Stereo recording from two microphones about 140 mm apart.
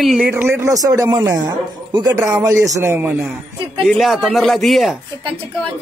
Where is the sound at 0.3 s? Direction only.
15° right (ahead or behind).